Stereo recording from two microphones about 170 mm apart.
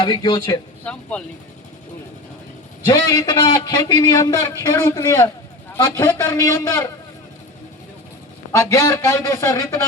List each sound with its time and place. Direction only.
0.0 s a man's voice: 25° left (ahead or behind)
0.9 s a man's voice: 10° left (ahead or behind)
2.8 s a man's voice: 20° left (ahead or behind)
8.5 s a man's voice: 20° left (ahead or behind)